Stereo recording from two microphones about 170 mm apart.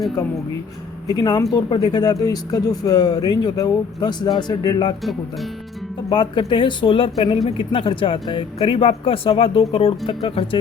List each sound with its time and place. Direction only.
1.0 s speech: 25° left (ahead or behind)
6.1 s speech: 30° left (ahead or behind)